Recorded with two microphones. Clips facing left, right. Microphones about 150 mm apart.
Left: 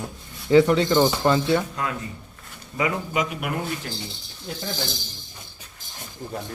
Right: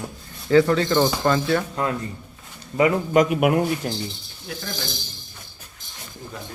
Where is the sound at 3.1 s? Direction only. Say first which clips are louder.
Right 9 dB; 50° right (ahead or behind).